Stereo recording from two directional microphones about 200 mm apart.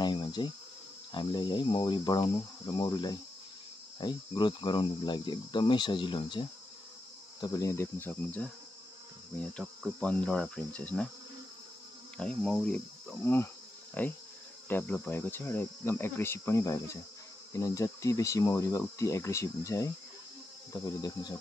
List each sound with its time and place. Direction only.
0.0 s insect: 25° left (ahead or behind)
1.1 s speech: 20° left (ahead or behind); by 11.1 s 5° left (ahead or behind)
12.2 s speech: 5° left (ahead or behind)
21.0 s speech: 20° left (ahead or behind)